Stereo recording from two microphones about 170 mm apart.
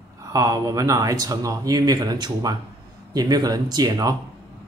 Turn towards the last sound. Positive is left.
turn(degrees=-20)  # may be behind; listen again after turning